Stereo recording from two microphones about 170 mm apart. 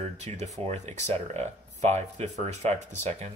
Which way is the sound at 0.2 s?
40° right (ahead or behind).